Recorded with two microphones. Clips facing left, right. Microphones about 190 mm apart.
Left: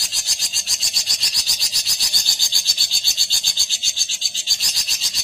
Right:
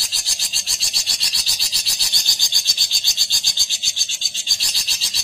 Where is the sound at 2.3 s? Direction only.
20° right (ahead or behind).